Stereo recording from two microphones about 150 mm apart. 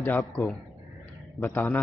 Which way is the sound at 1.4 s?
15° left (ahead or behind).